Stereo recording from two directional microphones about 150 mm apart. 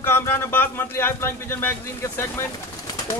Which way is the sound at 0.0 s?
15° left (ahead or behind).